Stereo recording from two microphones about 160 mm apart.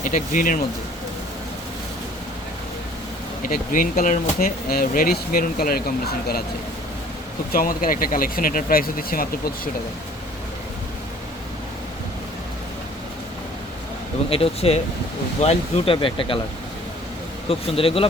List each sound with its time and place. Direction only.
0.0 s speech: 55° left (ahead or behind)
3.5 s speech: 55° left (ahead or behind)
7.5 s speech: 60° left (ahead or behind)
14.3 s speech: 35° left (ahead or behind)
17.5 s speech: 35° left (ahead or behind)